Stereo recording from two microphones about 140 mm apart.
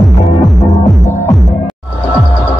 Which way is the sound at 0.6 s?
25° left (ahead or behind).